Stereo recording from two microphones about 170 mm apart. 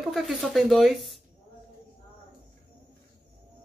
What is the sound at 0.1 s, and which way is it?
Speech, centre (ahead or behind).